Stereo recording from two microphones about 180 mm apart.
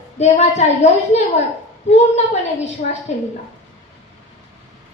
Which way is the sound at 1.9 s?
40° left (ahead or behind).